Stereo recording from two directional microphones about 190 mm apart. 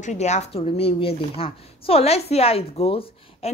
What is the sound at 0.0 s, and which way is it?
A woman's voice, 40° left (ahead or behind).